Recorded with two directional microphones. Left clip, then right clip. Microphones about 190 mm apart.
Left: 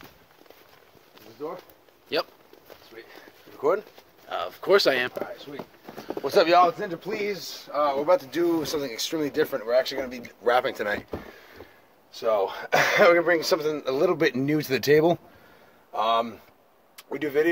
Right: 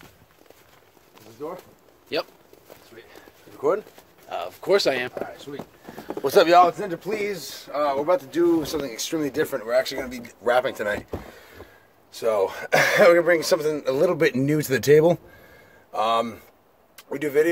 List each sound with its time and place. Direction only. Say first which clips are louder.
1.4 s speech: right 1 dB; 5° left (ahead or behind)
3.5 s speech: right 1 dB; 5° left (ahead or behind)
6.2 s speech: right 3 dB; 10° right (ahead or behind)
7.9 s speech: right 1 dB; 15° left (ahead or behind)
8.8 s speech: right 1 dB; centre (ahead or behind)
10.5 s speech: right 2 dB; centre (ahead or behind)
12.1 s a man's voice: right 2 dB; 15° right (ahead or behind)